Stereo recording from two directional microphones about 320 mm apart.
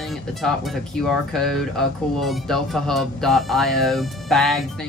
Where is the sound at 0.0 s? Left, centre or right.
Centre.